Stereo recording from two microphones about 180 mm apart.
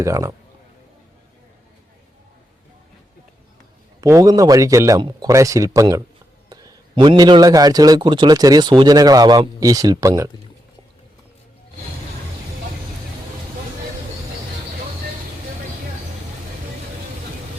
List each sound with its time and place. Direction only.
0.0 s a man's voice: 15° right (ahead or behind)
4.0 s a man's voice: 20° right (ahead or behind)